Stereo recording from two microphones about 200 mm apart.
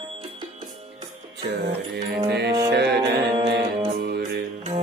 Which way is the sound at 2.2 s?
55° right (ahead or behind).